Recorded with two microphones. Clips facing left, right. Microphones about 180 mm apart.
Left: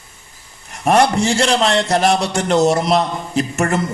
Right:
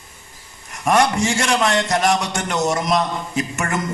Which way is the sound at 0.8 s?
30° left (ahead or behind).